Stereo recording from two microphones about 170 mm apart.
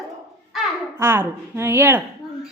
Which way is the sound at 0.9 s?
15° right (ahead or behind).